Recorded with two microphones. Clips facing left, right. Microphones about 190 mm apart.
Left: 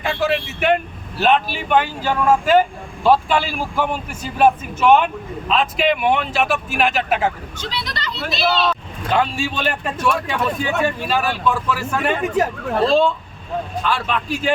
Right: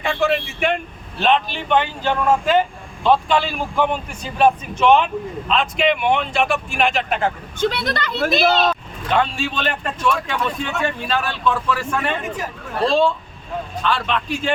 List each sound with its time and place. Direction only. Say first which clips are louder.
0.0 s speech: right 1 dB; 5° left (ahead or behind)
7.6 s a woman's voice: right 8 dB; 55° right (ahead or behind)
9.1 s speech: even; 5° left (ahead or behind)